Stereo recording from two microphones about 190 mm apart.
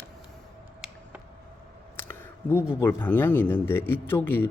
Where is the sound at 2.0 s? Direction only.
15° left (ahead or behind).